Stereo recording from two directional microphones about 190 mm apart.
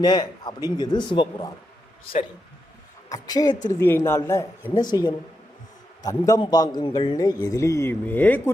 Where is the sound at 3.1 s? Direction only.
20° left (ahead or behind).